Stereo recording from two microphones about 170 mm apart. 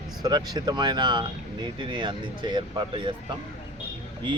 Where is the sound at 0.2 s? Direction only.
25° right (ahead or behind).